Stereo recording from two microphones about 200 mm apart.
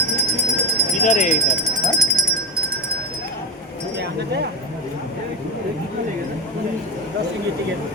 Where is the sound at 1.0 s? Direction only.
40° left (ahead or behind).